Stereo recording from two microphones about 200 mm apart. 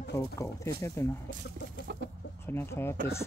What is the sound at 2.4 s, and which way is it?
Speech, 10° left (ahead or behind).